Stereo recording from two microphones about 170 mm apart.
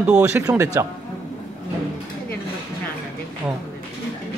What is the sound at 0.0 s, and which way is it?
Speech, 10° right (ahead or behind).